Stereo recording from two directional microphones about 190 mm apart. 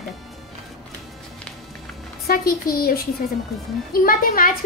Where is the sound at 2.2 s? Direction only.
50° left (ahead or behind).